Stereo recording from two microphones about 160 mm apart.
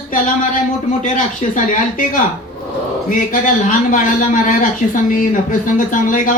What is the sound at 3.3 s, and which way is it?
Speech, 55° left (ahead or behind).